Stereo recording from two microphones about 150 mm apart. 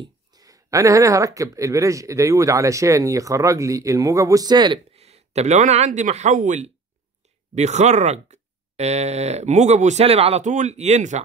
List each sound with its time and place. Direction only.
0.0 s speech: 25° right (ahead or behind)
4.9 s speech: 45° right (ahead or behind)